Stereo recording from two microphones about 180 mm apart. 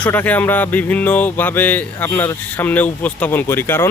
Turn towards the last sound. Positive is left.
turn(degrees=15)  # may be behind; listen again after turning